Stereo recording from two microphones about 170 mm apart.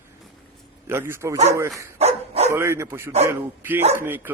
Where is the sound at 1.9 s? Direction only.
40° right (ahead or behind).